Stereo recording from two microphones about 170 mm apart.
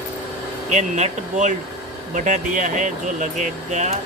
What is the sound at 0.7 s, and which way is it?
Speech, 45° right (ahead or behind).